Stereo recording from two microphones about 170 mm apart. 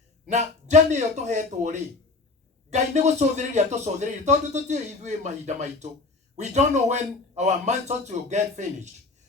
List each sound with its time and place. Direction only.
0.3 s a man's voice: 45° right (ahead or behind)